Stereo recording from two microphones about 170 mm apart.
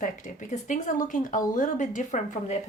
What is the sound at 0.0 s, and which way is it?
A woman's voice, 45° left (ahead or behind).